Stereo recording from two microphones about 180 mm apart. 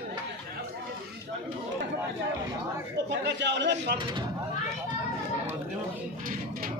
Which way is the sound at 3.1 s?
75° right (ahead or behind).